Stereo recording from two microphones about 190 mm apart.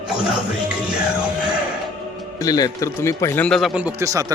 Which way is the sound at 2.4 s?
20° left (ahead or behind).